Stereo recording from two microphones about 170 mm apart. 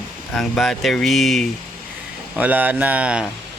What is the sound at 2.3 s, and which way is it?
Speech, 10° right (ahead or behind).